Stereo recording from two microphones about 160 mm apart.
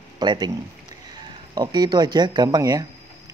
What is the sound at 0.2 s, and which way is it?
Speech, 25° right (ahead or behind).